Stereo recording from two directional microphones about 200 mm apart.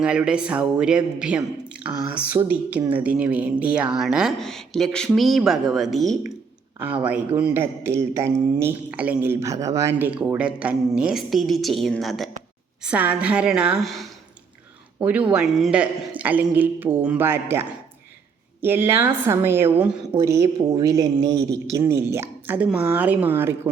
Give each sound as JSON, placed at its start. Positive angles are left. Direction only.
{"t": 0.0, "sound": "speech", "side_deg": -5}
{"t": 7.3, "sound": "speech", "side_deg": -10}
{"t": 15.3, "sound": "speech", "side_deg": 0}